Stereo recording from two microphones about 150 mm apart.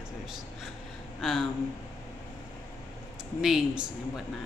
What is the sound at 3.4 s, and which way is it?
Speech, 5° right (ahead or behind).